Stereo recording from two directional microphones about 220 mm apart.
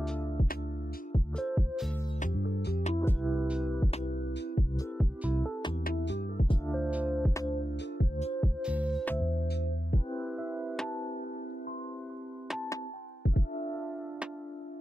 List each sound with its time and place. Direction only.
1.4 s music: centre (ahead or behind)
2.3 s music: 50° left (ahead or behind)
3.0 s music: 10° left (ahead or behind)
3.3 s music: 5° right (ahead or behind)
4.9 s music: centre (ahead or behind)
5.9 s music: 50° left (ahead or behind)
6.3 s music: 25° left (ahead or behind)
6.7 s music: 5° right (ahead or behind)
8.5 s music: 5° right (ahead or behind)
10.3 s music: 5° right (ahead or behind)